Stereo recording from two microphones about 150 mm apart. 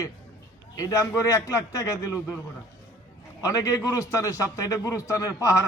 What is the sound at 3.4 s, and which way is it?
A man's voice, 20° left (ahead or behind).